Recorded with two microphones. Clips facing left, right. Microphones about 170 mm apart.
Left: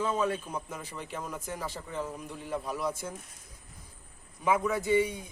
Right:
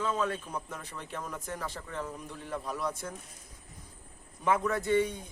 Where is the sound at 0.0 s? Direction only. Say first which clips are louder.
Left 2 dB; 15° left (ahead or behind).